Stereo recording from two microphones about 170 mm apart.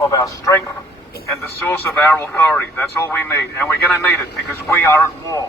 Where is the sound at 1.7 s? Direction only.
15° left (ahead or behind).